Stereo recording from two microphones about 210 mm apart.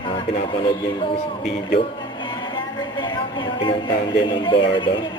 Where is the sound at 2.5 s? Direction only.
20° left (ahead or behind).